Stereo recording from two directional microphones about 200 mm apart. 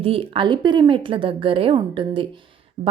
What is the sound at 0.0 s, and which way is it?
A woman's voice, 30° right (ahead or behind).